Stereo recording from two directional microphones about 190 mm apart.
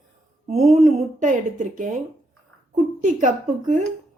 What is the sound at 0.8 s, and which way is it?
Speech, 40° right (ahead or behind).